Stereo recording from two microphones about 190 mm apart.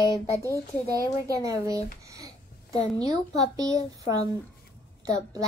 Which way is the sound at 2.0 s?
15° right (ahead or behind).